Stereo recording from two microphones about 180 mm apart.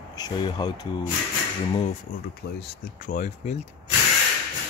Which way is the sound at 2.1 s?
50° left (ahead or behind).